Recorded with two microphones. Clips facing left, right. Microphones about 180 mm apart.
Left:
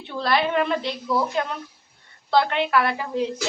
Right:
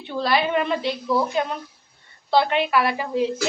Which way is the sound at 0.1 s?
Centre (ahead or behind).